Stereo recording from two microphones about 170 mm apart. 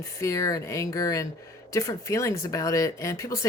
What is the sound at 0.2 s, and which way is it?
Speech, 20° left (ahead or behind).